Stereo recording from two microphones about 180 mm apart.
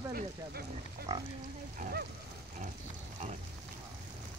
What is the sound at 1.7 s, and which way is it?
Speech, 50° right (ahead or behind).